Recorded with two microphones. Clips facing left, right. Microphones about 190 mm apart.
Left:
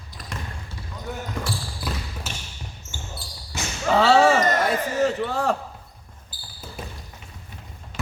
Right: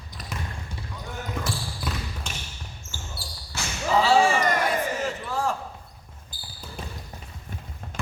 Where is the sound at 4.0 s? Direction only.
70° left (ahead or behind).